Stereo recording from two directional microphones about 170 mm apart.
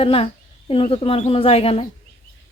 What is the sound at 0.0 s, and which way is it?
Speech, 35° left (ahead or behind).